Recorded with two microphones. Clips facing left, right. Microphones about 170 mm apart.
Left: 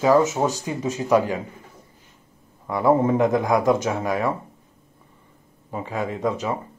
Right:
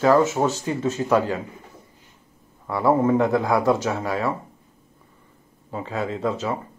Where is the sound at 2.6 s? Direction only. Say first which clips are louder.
Left 1 dB; 15° left (ahead or behind).